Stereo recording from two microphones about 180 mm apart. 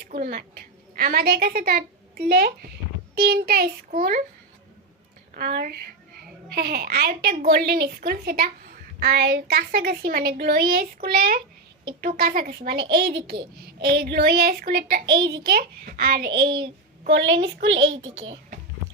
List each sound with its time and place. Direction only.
0.1 s a woman's voice: 50° right (ahead or behind)
5.3 s a woman's voice: 60° right (ahead or behind)
15.0 s a child's voice: 25° right (ahead or behind)
15.3 s a woman's voice: 60° right (ahead or behind)
16.5 s a child's voice: 25° right (ahead or behind)
17.1 s a woman's voice: 85° right